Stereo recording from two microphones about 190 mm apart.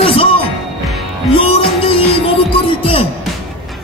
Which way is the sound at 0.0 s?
30° left (ahead or behind).